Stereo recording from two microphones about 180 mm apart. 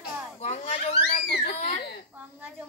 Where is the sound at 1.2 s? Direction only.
65° left (ahead or behind).